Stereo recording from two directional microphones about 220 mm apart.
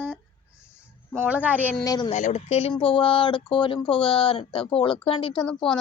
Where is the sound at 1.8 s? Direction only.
15° left (ahead or behind).